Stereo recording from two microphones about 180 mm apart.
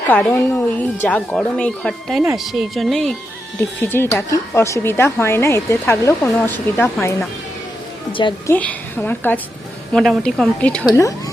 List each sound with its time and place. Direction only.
0.1 s speech: 10° left (ahead or behind)
3.6 s speech: 10° left (ahead or behind)
8.4 s speech: 10° left (ahead or behind)
10.8 s speech: 20° left (ahead or behind)